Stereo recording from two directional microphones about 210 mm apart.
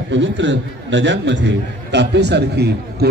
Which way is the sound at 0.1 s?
60° right (ahead or behind).